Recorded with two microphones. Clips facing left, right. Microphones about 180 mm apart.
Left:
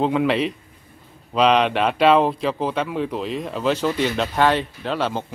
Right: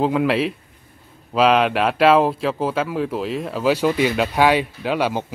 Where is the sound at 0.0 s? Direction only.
Centre (ahead or behind).